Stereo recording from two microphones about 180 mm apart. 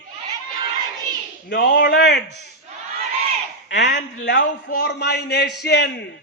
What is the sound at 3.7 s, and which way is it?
A man's voice, 80° left.